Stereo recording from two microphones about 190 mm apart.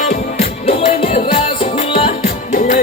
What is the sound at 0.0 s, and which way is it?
Music, 35° left (ahead or behind).